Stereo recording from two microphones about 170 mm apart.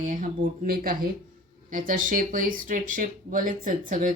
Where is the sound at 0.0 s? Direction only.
50° right (ahead or behind).